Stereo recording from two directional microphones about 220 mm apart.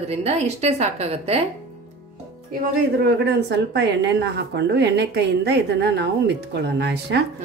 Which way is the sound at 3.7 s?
50° right (ahead or behind).